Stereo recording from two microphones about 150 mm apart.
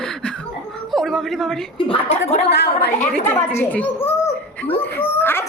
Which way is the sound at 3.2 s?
15° left (ahead or behind).